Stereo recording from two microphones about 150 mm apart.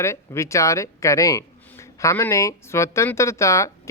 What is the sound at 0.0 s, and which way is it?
Speech, 20° left (ahead or behind).